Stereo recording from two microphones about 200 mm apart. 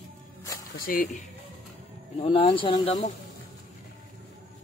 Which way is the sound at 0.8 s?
45° left (ahead or behind).